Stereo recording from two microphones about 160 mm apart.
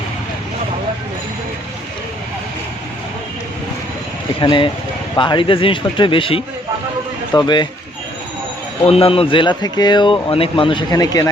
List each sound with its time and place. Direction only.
4.4 s a man's voice: 30° left (ahead or behind)
8.9 s a man's voice: 35° left (ahead or behind)